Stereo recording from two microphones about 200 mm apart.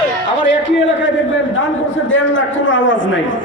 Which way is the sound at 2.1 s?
75° left (ahead or behind).